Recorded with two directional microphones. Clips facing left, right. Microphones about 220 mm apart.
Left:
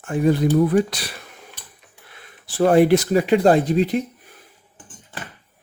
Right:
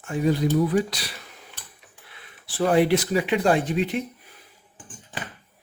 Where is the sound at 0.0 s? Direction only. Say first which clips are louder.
Left 4 dB; 55° left (ahead or behind); by 4.0 s 35° left (ahead or behind).